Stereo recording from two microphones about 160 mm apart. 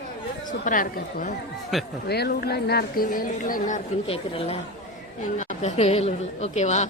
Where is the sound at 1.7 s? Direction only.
Centre (ahead or behind).